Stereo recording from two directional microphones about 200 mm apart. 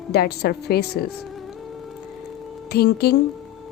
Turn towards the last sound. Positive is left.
turn(degrees=55)  # may be behind; listen again after turning